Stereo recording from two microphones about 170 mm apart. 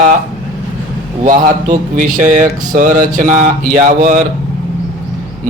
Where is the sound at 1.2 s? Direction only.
50° right (ahead or behind).